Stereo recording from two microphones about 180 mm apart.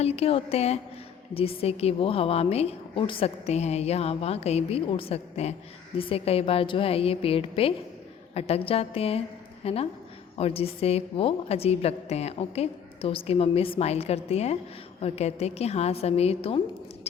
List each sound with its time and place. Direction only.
0.0 s a woman's voice: 35° left (ahead or behind)